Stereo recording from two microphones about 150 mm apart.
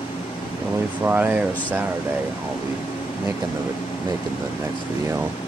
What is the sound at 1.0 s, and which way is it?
Speech, 10° right (ahead or behind).